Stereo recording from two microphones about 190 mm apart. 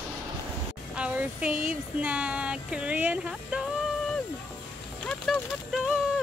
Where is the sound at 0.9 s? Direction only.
5° right (ahead or behind).